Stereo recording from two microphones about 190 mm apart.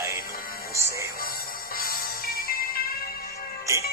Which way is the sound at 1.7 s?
50° left (ahead or behind).